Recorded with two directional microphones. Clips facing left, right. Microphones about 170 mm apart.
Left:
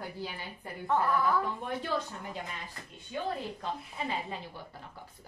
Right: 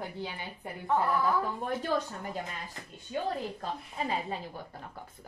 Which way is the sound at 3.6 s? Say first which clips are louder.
Right 1 dB; 40° right (ahead or behind).